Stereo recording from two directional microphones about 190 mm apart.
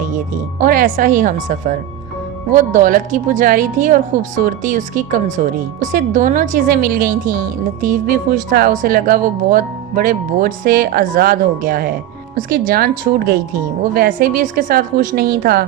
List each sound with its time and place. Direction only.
0.6 s a woman's voice: 45° right (ahead or behind)